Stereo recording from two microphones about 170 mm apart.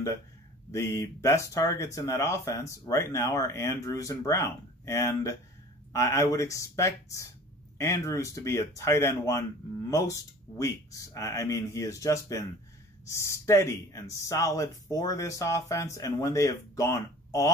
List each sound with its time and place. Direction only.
0.7 s speech: 15° left (ahead or behind)